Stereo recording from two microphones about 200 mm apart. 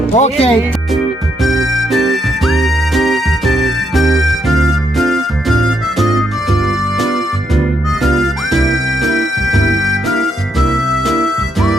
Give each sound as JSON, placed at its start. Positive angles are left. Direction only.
{"t": 0.1, "sound": "speech", "side_deg": 30}
{"t": 1.4, "sound": "music", "side_deg": 0}